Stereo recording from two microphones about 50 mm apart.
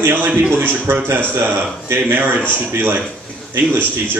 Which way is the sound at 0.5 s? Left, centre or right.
Right.